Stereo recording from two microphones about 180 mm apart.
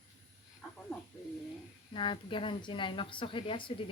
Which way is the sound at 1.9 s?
30° left (ahead or behind).